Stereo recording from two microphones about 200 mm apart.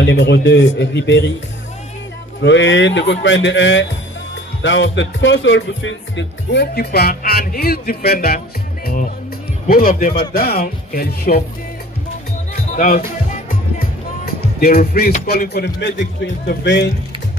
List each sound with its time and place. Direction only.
0.0 s speech: 65° left (ahead or behind)
2.4 s speech: 65° left (ahead or behind)
12.7 s speech: 40° left (ahead or behind); by 16.9 s 60° left (ahead or behind)